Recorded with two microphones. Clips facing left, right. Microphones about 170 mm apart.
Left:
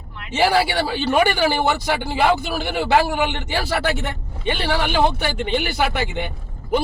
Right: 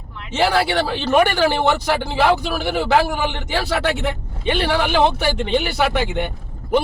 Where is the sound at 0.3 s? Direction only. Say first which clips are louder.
Even; 10° left (ahead or behind).